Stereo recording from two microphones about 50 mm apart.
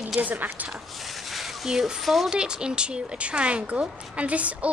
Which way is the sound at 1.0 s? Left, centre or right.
Centre.